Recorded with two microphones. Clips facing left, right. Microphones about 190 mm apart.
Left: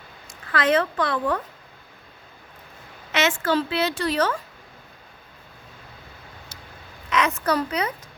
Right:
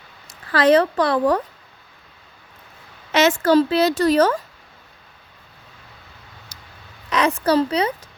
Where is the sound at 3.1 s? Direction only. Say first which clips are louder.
Right 7 dB; 40° right (ahead or behind).